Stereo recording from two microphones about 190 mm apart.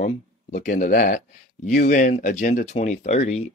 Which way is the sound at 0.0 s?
40° left (ahead or behind).